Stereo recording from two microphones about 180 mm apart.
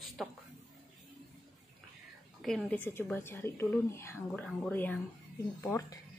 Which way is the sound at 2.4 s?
5° left (ahead or behind).